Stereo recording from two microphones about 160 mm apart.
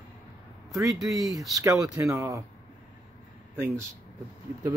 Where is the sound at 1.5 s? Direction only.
20° right (ahead or behind).